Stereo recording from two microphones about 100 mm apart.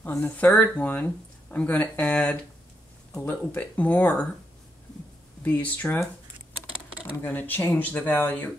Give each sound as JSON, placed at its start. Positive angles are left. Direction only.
{"t": 0.0, "sound": "speech", "side_deg": 15}
{"t": 5.4, "sound": "speech", "side_deg": 15}
{"t": 7.2, "sound": "speech", "side_deg": 20}